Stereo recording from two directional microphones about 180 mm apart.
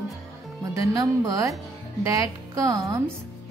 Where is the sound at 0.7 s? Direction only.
20° right (ahead or behind).